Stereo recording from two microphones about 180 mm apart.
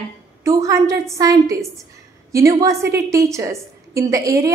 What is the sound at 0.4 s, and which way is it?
A woman's voice, 15° right (ahead or behind).